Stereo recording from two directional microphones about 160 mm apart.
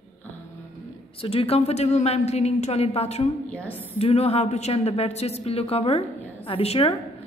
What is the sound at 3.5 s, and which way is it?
Speech, 10° left (ahead or behind).